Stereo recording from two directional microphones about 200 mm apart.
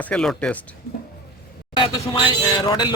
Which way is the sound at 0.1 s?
5° left (ahead or behind).